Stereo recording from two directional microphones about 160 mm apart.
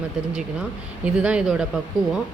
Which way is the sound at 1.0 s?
5° right (ahead or behind).